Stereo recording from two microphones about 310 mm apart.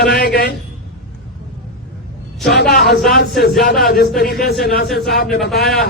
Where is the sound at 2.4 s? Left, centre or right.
Left.